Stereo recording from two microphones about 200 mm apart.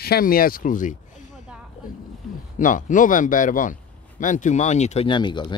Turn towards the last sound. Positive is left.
turn(degrees=20)  # may be behind; listen again after turning